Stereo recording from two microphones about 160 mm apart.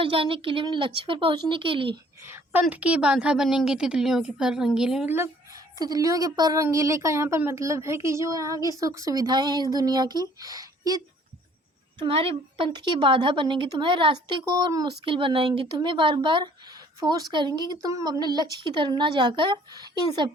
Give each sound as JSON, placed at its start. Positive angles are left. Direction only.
{"t": 0.0, "sound": "a woman's voice", "side_deg": -35}
{"t": 2.2, "sound": "a woman's voice", "side_deg": -15}
{"t": 5.1, "sound": "a woman's voice", "side_deg": -20}
{"t": 11.9, "sound": "a woman's voice", "side_deg": -35}